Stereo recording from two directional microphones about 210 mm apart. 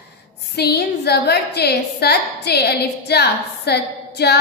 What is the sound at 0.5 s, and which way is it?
A woman's voice, 50° left (ahead or behind).